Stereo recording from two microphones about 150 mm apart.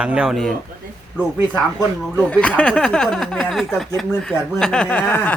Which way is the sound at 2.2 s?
10° left (ahead or behind).